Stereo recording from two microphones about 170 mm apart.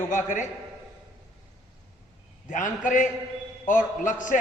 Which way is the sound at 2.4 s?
50° left (ahead or behind).